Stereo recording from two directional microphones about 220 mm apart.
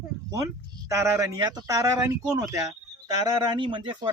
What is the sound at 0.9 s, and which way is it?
A man's voice, 15° right (ahead or behind).